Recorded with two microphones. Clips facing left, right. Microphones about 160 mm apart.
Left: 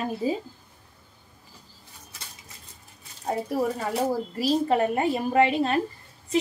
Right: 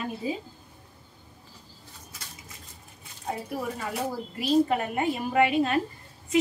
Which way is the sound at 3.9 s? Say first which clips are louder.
Left 6 dB; 35° left (ahead or behind).